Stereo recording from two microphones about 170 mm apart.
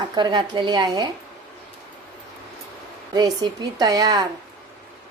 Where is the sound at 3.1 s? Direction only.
25° right (ahead or behind).